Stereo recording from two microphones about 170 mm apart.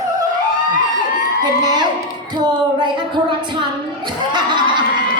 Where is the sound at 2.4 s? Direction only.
25° right (ahead or behind).